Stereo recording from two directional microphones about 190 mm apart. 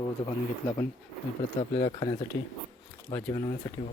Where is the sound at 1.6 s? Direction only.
25° left (ahead or behind).